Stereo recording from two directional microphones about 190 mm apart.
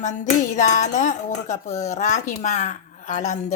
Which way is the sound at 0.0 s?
40° left (ahead or behind).